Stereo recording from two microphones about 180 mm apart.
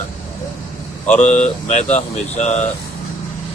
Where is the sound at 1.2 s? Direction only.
40° left (ahead or behind).